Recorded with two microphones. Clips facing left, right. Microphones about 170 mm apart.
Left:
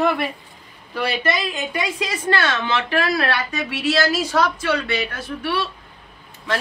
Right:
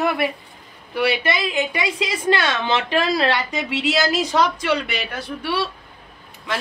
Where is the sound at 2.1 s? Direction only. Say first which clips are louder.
Right 2 dB; 15° right (ahead or behind).